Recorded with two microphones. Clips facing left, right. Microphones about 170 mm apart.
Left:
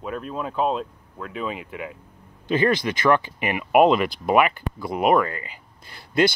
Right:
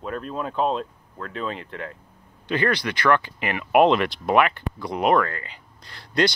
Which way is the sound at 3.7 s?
Centre (ahead or behind).